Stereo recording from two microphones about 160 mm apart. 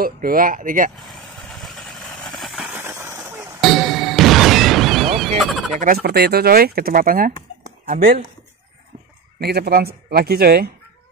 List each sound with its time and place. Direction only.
0.0 s speech: 65° right (ahead or behind)
1.6 s vehicle: centre (ahead or behind); by 3.4 s 15° right (ahead or behind)
3.6 s music: centre (ahead or behind)
5.4 s speech: centre (ahead or behind)
6.0 s speech: 80° right; by 8.1 s 55° right (ahead or behind)
9.4 s speech: 80° right